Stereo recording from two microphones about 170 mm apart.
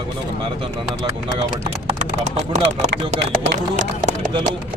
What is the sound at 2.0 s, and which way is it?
Speech, 40° right (ahead or behind).